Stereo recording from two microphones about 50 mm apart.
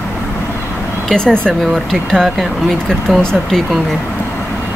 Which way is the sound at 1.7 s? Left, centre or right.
Centre.